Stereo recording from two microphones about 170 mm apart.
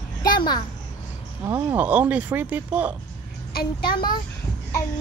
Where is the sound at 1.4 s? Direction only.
10° right (ahead or behind).